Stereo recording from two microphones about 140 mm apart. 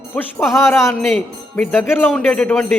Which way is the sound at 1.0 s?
5° left (ahead or behind).